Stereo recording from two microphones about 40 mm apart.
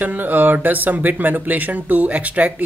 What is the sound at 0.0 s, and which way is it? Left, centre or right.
Speech, right.